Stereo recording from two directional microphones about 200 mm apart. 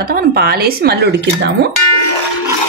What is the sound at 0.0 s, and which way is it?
Speech, 50° right (ahead or behind).